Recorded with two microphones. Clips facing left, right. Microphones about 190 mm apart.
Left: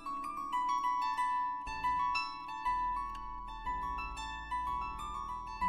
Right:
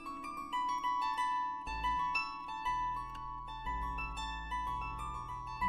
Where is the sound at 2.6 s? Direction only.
25° right (ahead or behind).